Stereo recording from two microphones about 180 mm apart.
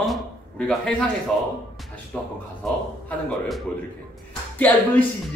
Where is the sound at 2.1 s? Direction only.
5° left (ahead or behind).